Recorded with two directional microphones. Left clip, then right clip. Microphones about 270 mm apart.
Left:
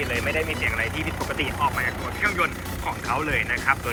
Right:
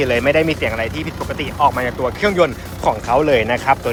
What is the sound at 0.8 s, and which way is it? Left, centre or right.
Speech, centre.